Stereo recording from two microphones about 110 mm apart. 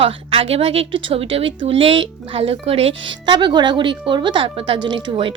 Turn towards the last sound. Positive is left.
turn(degrees=-45)  # may be behind; listen again after turning